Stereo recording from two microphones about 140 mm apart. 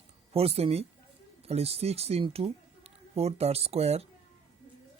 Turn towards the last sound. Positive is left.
turn(degrees=-50)  # may be behind; listen again after turning